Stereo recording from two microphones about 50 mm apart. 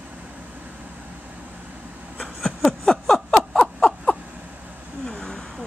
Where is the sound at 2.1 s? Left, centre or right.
Centre.